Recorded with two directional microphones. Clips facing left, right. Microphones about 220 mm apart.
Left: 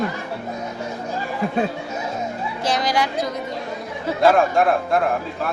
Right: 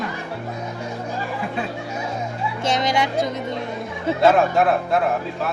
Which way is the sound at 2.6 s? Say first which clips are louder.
Even; 25° right (ahead or behind).